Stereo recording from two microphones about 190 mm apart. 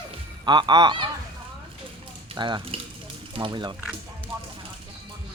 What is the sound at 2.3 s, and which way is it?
Speech, 25° right (ahead or behind).